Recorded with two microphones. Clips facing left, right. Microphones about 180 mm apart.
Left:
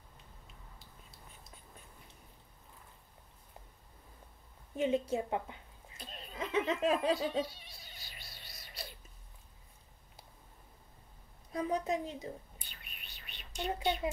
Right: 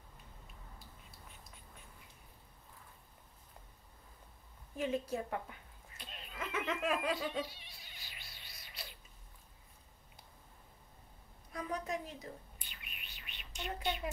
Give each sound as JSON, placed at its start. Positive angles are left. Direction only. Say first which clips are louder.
{"t": 4.7, "sound": "a woman's voice", "louder": "left 5 dB", "side_deg": 25}
{"t": 5.9, "sound": "giggle", "louder": "left 4 dB", "side_deg": 35}
{"t": 11.5, "sound": "a woman's voice", "louder": "left 6 dB", "side_deg": 25}
{"t": 12.9, "sound": "a sound", "louder": "even", "side_deg": 40}